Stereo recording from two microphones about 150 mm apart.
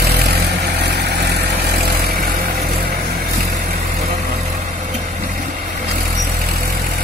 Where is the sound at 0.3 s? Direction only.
90° right.